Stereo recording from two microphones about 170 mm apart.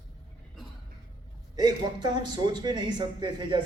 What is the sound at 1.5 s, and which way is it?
A man's voice, 25° right (ahead or behind).